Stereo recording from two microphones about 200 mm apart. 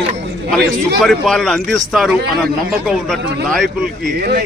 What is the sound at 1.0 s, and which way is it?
Speech, centre (ahead or behind).